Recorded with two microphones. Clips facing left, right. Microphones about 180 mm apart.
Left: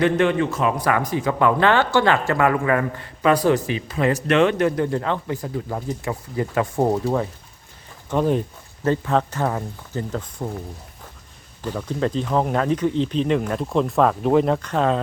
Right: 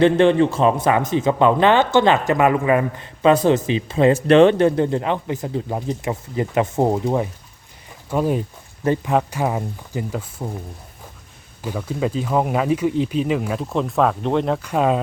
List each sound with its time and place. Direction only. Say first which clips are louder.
0.0 s a man's voice: right 5 dB; 30° right (ahead or behind); by 10.5 s 5° right (ahead or behind)
11.6 s speech: even; 10° right (ahead or behind)
14.7 s speech: right 2 dB; 10° right (ahead or behind)